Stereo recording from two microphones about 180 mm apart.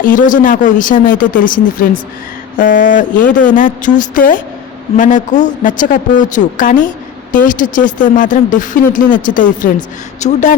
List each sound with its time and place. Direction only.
0.0 s speech: 45° left (ahead or behind)